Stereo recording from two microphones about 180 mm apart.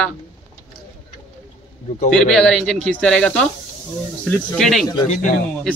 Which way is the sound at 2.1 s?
5° left (ahead or behind).